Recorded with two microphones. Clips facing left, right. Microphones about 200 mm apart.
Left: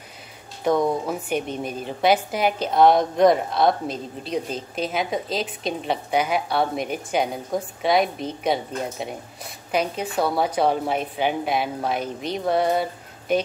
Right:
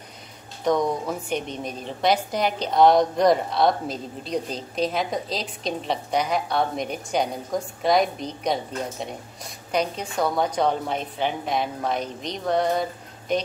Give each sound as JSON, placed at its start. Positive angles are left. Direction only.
{"t": 0.7, "sound": "a woman's voice", "side_deg": 5}
{"t": 9.7, "sound": "a woman's voice", "side_deg": 5}